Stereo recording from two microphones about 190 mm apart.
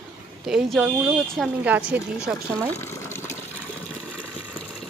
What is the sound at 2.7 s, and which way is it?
Water, 15° left (ahead or behind).